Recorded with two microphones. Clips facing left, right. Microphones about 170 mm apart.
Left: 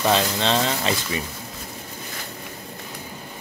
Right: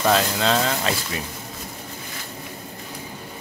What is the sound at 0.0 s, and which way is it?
Speech, centre (ahead or behind).